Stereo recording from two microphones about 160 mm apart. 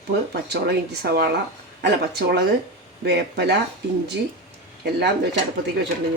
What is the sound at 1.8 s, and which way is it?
Speech, 90° right.